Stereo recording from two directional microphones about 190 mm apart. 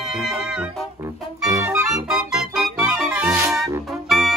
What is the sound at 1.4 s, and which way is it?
Music, 15° right (ahead or behind).